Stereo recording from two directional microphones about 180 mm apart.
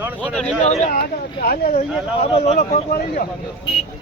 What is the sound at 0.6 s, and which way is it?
Speech, 40° left (ahead or behind).